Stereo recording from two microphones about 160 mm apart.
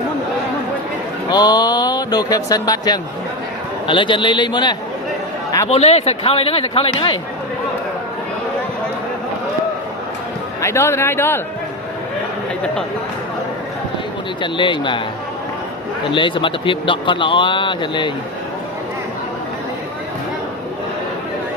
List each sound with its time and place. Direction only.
1.3 s speech: 25° left (ahead or behind)
5.7 s speech: 40° left (ahead or behind)
10.6 s a man's voice: 15° left (ahead or behind)
14.4 s speech: 30° left (ahead or behind)
16.1 s speech: 30° left (ahead or behind)